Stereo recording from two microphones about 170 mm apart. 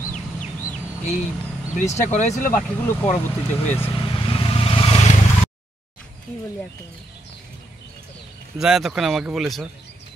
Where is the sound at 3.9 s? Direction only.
30° left (ahead or behind).